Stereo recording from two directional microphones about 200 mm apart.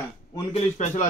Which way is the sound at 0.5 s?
35° left (ahead or behind).